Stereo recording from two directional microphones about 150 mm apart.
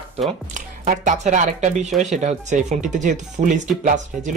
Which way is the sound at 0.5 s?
55° right (ahead or behind).